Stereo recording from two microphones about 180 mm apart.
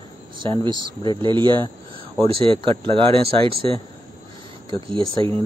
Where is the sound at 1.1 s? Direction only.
25° right (ahead or behind).